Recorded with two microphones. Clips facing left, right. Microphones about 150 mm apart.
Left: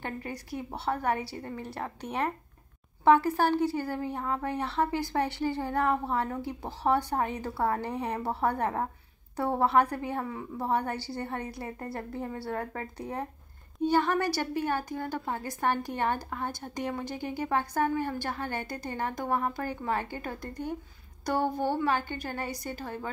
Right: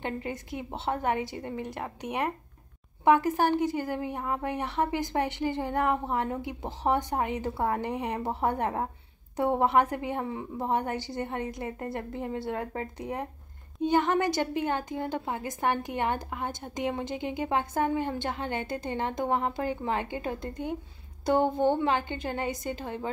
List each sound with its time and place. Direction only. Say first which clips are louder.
0.0 s a woman's voice: right 3 dB; 20° right (ahead or behind)